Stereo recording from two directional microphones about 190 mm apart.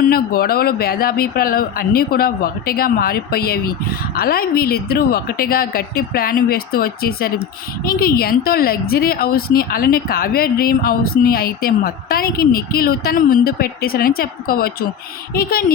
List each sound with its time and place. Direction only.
0.1 s speech: 50° left (ahead or behind)